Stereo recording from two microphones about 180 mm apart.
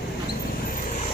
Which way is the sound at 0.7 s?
45° left (ahead or behind).